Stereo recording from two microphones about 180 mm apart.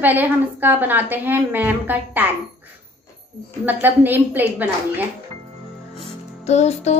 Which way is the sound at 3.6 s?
10° right (ahead or behind).